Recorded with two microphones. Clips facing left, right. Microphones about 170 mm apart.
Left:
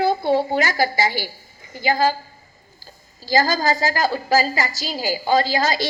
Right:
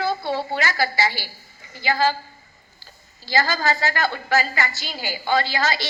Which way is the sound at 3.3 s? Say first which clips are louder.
Left 3 dB; 40° left (ahead or behind).